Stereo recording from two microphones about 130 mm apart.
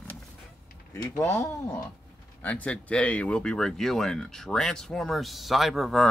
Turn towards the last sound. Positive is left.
turn(degrees=0)  # may be behind; listen again after turning